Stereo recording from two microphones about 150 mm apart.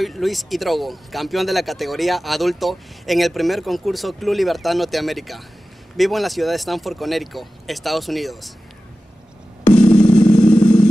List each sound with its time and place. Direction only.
0.0 s speech: centre (ahead or behind)
10.0 s vehicle: 5° left (ahead or behind)